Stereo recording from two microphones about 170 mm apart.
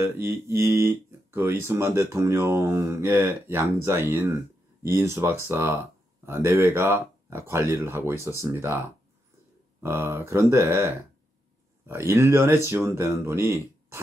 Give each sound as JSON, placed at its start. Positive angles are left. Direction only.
{"t": 0.0, "sound": "speech", "side_deg": -15}
{"t": 9.8, "sound": "speech", "side_deg": -15}